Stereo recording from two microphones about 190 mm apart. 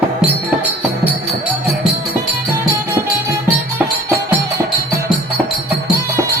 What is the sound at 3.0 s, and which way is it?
Music, 15° right (ahead or behind).